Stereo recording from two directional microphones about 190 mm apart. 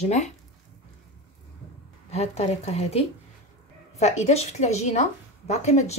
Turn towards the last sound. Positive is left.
turn(degrees=35)  # may be behind; listen again after turning